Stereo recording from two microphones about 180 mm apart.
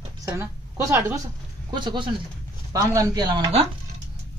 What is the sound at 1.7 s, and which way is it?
Speech, 25° right (ahead or behind).